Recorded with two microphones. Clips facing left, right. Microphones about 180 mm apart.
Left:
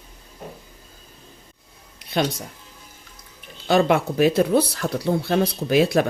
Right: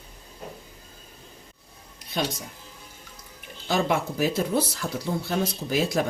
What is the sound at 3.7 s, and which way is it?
Speech, 65° left (ahead or behind).